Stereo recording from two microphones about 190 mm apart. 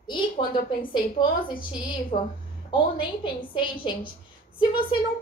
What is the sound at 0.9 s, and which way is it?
A woman's voice, 25° left (ahead or behind).